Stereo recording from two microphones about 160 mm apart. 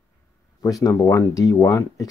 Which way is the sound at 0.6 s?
20° left (ahead or behind).